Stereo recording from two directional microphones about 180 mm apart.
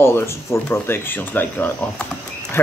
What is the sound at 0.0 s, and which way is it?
Speech, 15° left (ahead or behind).